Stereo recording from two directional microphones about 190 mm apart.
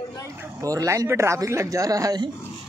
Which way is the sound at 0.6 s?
15° right (ahead or behind).